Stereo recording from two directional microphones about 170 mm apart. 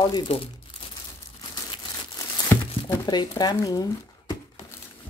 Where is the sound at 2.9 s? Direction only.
25° left (ahead or behind).